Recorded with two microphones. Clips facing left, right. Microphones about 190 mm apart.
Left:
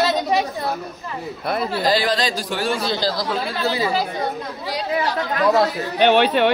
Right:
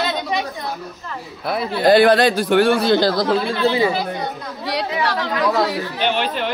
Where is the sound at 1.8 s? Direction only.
55° right (ahead or behind).